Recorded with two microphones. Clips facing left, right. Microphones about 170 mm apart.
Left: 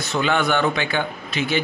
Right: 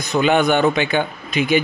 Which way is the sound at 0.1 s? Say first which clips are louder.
Right 5 dB; 15° right (ahead or behind).